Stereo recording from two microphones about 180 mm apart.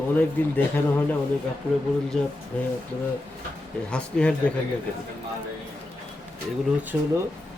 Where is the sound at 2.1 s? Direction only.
5° left (ahead or behind).